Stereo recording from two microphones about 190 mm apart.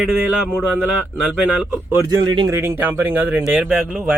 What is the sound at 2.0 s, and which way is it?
Speech, 25° right (ahead or behind).